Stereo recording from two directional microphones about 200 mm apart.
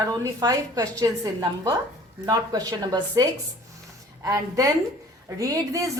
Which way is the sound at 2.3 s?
20° right (ahead or behind).